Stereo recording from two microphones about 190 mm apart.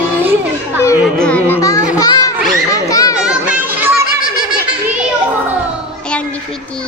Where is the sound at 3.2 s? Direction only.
5° right (ahead or behind).